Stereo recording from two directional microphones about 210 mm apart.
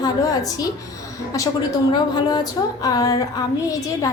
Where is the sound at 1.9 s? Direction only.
20° left (ahead or behind).